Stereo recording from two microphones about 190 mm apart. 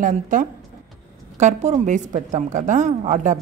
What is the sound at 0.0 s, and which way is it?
A woman's voice, 45° right (ahead or behind).